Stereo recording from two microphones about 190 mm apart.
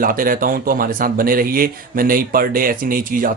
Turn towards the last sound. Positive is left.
turn(degrees=-45)  # may be behind; listen again after turning